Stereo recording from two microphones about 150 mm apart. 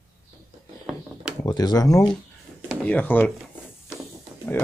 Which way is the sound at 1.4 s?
25° left (ahead or behind).